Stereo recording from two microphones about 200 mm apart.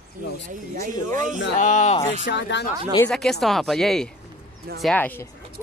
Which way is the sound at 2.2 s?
60° left (ahead or behind).